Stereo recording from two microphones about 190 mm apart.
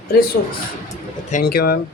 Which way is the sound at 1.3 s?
55° left (ahead or behind).